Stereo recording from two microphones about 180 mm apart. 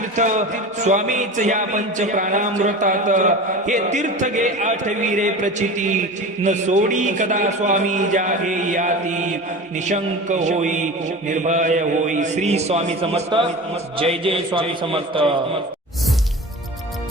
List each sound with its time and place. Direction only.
0.2 s music: 40° right (ahead or behind)
11.3 s a man's voice: 45° right (ahead or behind)